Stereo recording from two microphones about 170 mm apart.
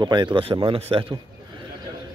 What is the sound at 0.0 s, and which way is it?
A man's voice, 25° right (ahead or behind).